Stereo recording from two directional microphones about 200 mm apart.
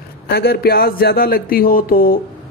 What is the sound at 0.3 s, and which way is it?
A woman's voice, 50° left (ahead or behind).